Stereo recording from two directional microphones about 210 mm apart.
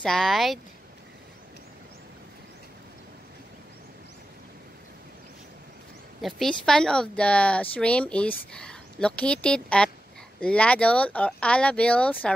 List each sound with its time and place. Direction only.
0.0 s speech: centre (ahead or behind)
6.2 s speech: centre (ahead or behind)